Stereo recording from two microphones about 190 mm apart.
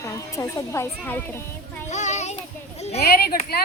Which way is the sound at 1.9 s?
40° left (ahead or behind).